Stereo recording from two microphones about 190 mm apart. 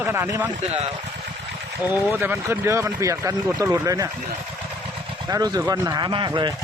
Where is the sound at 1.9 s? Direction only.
10° right (ahead or behind).